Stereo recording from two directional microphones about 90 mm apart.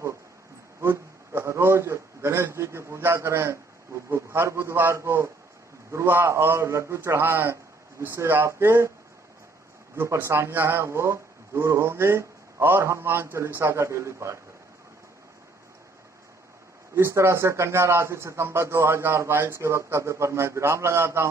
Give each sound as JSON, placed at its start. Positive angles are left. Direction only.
{"t": 0.7, "sound": "a sound", "side_deg": -30}
{"t": 4.1, "sound": "speech", "side_deg": -30}
{"t": 9.9, "sound": "speech", "side_deg": -30}
{"t": 16.9, "sound": "speech", "side_deg": -30}